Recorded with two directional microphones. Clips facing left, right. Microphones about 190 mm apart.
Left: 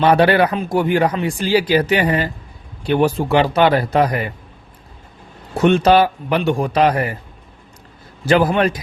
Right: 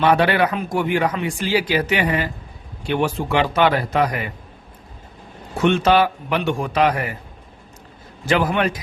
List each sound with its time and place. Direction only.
0.0 s speech: 35° left (ahead or behind)
5.5 s speech: 40° left (ahead or behind)
8.2 s speech: 35° left (ahead or behind)